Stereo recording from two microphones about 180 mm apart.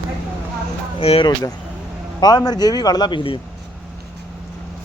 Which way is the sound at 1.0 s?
30° left (ahead or behind).